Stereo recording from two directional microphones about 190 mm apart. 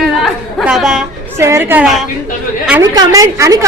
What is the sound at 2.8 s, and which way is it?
Speech, 20° right (ahead or behind).